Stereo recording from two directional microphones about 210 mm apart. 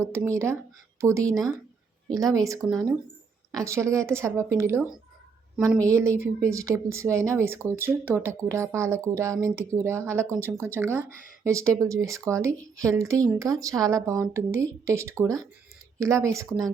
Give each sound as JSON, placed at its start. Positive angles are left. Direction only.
{"t": 0.0, "sound": "speech", "side_deg": -10}